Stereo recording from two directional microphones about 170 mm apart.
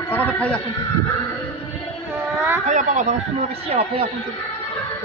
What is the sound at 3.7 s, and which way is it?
Speech, 35° right (ahead or behind).